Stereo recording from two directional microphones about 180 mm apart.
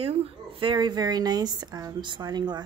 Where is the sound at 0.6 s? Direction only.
25° right (ahead or behind).